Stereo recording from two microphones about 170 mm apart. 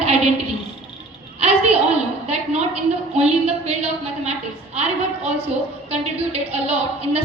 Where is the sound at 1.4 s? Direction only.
40° right (ahead or behind).